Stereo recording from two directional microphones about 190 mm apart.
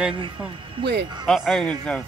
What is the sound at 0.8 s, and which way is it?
Speech, 65° right (ahead or behind).